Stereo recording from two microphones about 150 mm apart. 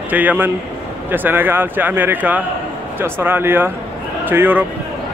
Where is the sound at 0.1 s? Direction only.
10° right (ahead or behind).